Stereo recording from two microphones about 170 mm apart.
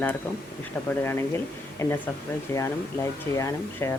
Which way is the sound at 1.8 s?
15° left (ahead or behind).